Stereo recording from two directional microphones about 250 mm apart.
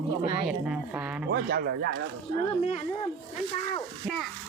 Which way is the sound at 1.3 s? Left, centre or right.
Right.